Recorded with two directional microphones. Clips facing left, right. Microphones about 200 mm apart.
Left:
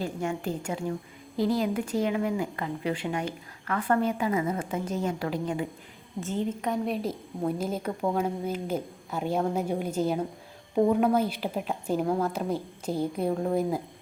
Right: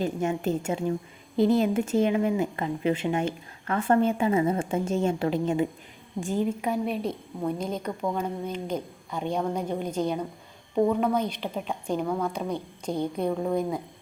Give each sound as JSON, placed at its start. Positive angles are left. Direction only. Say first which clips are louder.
{"t": 0.0, "sound": "a woman's voice", "louder": "right 4 dB", "side_deg": -20}
{"t": 6.1, "sound": "a woman's voice", "louder": "right 3 dB", "side_deg": -15}